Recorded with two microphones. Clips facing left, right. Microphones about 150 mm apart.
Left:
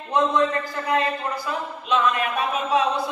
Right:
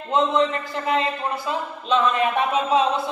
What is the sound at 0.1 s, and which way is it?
A man's voice, 20° right (ahead or behind).